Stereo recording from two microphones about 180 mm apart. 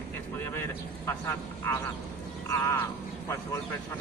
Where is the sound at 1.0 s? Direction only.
15° left (ahead or behind).